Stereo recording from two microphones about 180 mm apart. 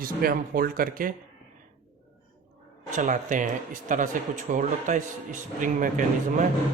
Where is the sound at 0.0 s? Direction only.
55° right (ahead or behind).